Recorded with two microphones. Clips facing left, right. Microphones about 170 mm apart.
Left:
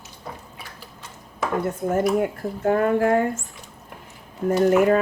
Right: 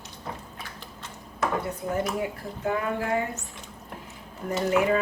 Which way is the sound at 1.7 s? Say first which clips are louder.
Left 7 dB; 50° left (ahead or behind).